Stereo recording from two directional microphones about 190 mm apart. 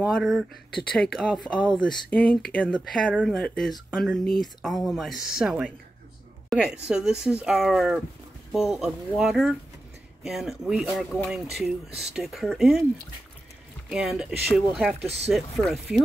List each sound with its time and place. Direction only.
0.0 s speech: centre (ahead or behind)
13.8 s speech: 5° right (ahead or behind)
15.0 s speech: 35° right (ahead or behind)
15.3 s speech: centre (ahead or behind)